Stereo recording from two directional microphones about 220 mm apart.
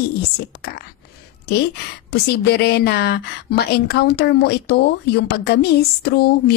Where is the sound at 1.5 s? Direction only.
50° left (ahead or behind).